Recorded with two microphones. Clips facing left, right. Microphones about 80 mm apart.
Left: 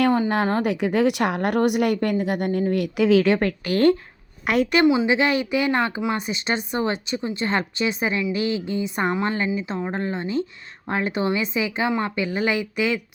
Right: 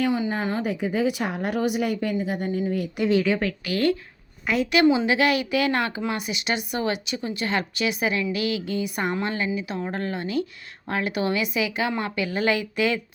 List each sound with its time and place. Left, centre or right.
0.0 s a woman's voice: left
3.4 s speech: left
4.4 s a woman's voice: left
4.9 s speech: centre